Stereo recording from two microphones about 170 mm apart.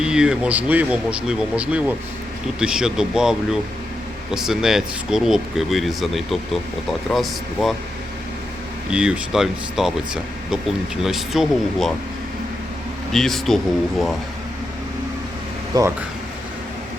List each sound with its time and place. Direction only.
0.0 s speech: 5° right (ahead or behind)
8.9 s speech: 5° right (ahead or behind)
13.1 s speech: centre (ahead or behind)
15.7 s speech: 20° right (ahead or behind)